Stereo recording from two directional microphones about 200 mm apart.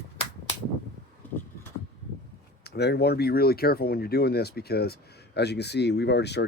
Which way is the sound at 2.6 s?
55° left (ahead or behind).